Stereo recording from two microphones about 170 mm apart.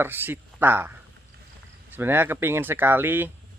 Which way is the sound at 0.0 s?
10° right (ahead or behind).